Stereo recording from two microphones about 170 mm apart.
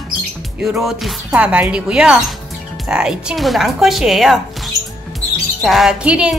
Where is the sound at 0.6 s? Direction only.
Centre (ahead or behind).